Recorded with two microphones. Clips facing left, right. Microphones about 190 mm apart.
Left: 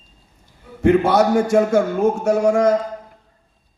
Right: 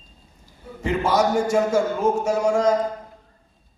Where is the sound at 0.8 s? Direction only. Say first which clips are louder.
Left 6 dB; 60° left (ahead or behind).